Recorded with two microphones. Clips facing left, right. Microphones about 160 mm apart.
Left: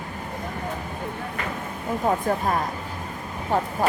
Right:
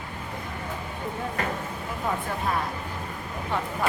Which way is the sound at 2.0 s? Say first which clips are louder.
Left 6 dB; 45° left (ahead or behind).